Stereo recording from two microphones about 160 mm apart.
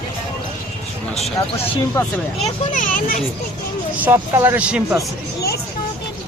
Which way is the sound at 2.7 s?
55° left (ahead or behind).